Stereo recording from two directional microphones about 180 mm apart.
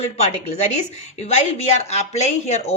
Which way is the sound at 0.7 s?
40° left (ahead or behind).